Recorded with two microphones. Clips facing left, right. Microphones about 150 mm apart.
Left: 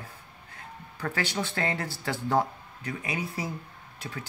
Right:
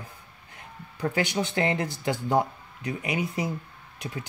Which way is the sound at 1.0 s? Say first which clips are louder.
Right 4 dB; 15° right (ahead or behind).